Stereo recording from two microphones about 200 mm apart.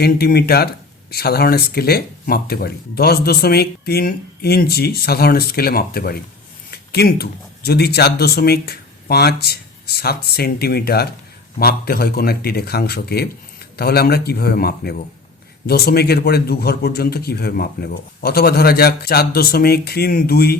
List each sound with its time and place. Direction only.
0.0 s speech: 50° left (ahead or behind)